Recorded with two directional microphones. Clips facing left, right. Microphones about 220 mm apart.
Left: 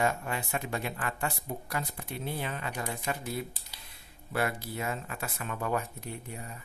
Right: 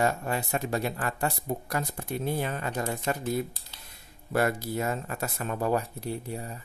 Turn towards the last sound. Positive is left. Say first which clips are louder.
# right 7 dB
turn(degrees=-35)  # may be behind; listen again after turning